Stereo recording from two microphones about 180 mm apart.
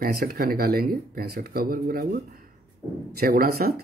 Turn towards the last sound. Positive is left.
turn(degrees=-55)  # may be behind; listen again after turning